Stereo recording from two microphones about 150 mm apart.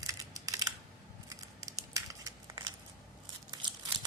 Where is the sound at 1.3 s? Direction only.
20° right (ahead or behind).